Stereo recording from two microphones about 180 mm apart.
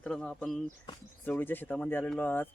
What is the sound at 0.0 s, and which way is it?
Speech, 5° left (ahead or behind).